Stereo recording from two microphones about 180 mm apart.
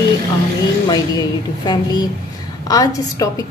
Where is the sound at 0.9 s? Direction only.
20° left (ahead or behind).